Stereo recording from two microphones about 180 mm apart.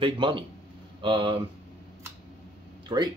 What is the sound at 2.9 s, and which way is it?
Speech, 25° right (ahead or behind).